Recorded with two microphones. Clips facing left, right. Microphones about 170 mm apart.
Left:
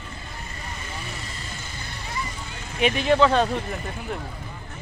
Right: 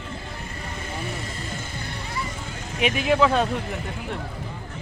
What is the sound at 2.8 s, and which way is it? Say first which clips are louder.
Speech: left 1 dB; 5° right (ahead or behind).